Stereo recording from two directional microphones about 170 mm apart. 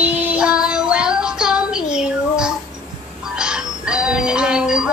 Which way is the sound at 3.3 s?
5° right (ahead or behind).